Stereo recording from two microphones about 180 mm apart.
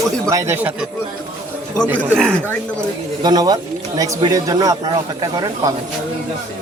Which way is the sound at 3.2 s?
20° right (ahead or behind).